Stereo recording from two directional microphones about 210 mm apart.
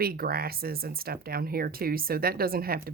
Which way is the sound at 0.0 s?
45° right (ahead or behind).